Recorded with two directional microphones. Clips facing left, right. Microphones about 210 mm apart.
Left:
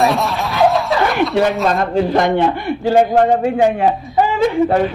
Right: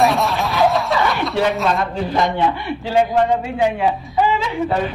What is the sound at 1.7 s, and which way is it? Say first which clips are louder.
A man's voice: left 5 dB; 45° left (ahead or behind).